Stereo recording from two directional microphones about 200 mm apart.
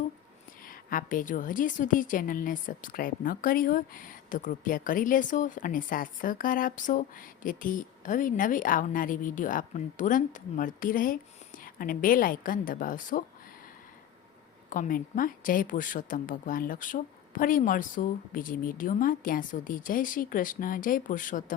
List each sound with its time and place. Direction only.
0.6 s a woman's voice: 45° left (ahead or behind)
14.7 s a woman's voice: 40° left (ahead or behind)